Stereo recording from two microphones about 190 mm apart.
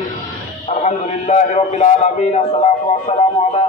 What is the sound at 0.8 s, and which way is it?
A man's voice, 35° left (ahead or behind).